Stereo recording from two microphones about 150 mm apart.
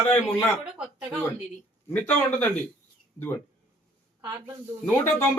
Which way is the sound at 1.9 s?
10° left (ahead or behind).